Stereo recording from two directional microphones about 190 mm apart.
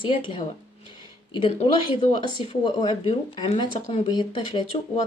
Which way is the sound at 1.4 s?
35° left (ahead or behind).